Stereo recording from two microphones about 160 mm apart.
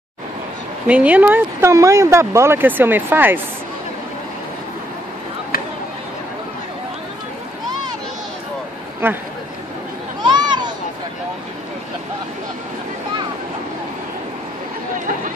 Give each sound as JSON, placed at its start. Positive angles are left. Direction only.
{"t": 0.8, "sound": "speech", "side_deg": -10}
{"t": 9.0, "sound": "speech", "side_deg": -15}
{"t": 10.2, "sound": "children playing", "side_deg": -25}